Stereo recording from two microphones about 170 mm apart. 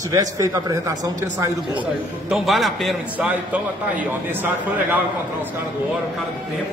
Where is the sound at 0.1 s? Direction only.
20° right (ahead or behind).